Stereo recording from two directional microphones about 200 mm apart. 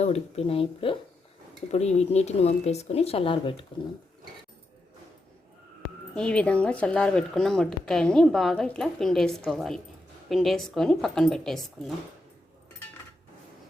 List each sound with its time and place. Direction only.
0.0 s speech: 30° left (ahead or behind)
6.1 s speech: 5° left (ahead or behind)